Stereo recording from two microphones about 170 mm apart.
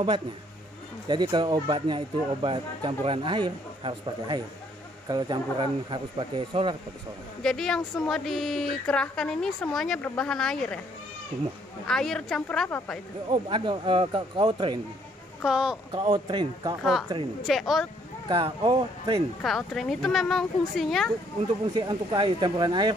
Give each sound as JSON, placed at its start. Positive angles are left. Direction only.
{"t": 1.0, "sound": "speech", "side_deg": -25}
{"t": 7.4, "sound": "a woman's voice", "side_deg": 5}
{"t": 11.9, "sound": "a woman's voice", "side_deg": 5}
{"t": 13.3, "sound": "speech", "side_deg": -30}
{"t": 15.4, "sound": "a woman's voice", "side_deg": -5}
{"t": 15.9, "sound": "speech", "side_deg": -30}
{"t": 17.5, "sound": "a woman's voice", "side_deg": 0}
{"t": 18.3, "sound": "speech", "side_deg": -30}
{"t": 19.4, "sound": "a woman's voice", "side_deg": 0}
{"t": 21.7, "sound": "speech", "side_deg": -30}